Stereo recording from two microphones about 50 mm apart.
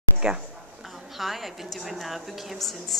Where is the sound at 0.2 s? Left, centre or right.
Centre.